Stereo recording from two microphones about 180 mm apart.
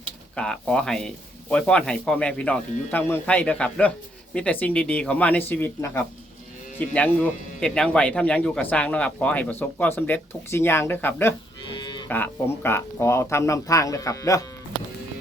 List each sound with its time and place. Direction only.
0.3 s speech: 5° left (ahead or behind)
11.6 s cattle: 25° left (ahead or behind)
12.0 s speech: 10° left (ahead or behind)